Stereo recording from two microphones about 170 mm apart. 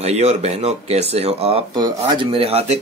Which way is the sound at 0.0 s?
40° right (ahead or behind).